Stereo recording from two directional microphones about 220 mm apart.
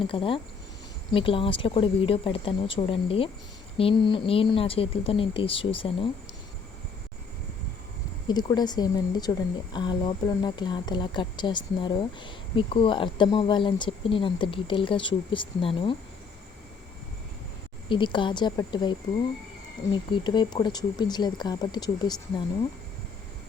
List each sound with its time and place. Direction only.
0.0 s speech: 25° left (ahead or behind)
8.3 s speech: 20° left (ahead or behind)
17.8 s speech: 20° left (ahead or behind)